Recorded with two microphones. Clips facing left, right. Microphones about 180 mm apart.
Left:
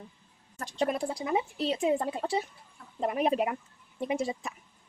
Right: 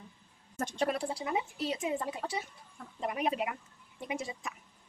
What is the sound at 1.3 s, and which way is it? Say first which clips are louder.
Speech: left 5 dB; 30° left (ahead or behind).